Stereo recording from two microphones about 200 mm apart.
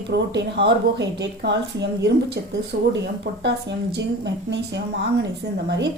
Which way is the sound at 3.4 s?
60° right (ahead or behind).